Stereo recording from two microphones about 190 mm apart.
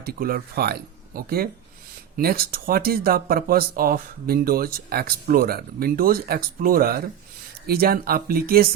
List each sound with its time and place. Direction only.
0.0 s speech: 50° right (ahead or behind)